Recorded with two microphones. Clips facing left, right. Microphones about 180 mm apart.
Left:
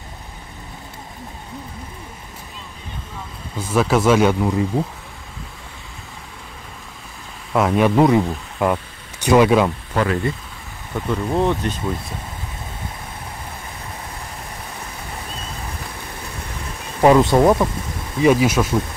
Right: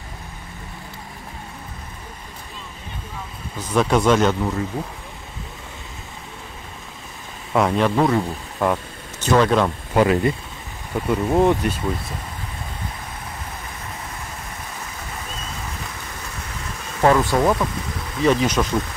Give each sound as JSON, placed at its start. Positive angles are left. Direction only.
{"t": 3.5, "sound": "speech", "side_deg": 5}
{"t": 7.5, "sound": "speech", "side_deg": 5}
{"t": 9.9, "sound": "speech", "side_deg": -20}
{"t": 17.0, "sound": "speech", "side_deg": 20}
{"t": 18.2, "sound": "speech", "side_deg": 10}